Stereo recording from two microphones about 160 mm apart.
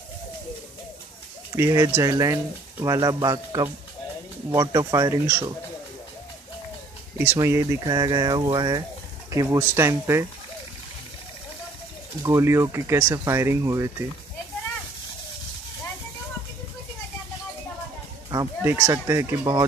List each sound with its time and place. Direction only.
1.5 s speech: 20° right (ahead or behind)
7.2 s speech: 15° right (ahead or behind)
12.2 s speech: 15° right (ahead or behind)
18.3 s speech: 20° right (ahead or behind)